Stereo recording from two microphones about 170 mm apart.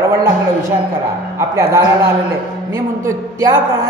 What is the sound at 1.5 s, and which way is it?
Speech, 15° right (ahead or behind).